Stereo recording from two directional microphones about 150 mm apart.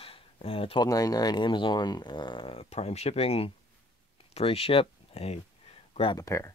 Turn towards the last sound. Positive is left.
turn(degrees=20)  # may be behind; listen again after turning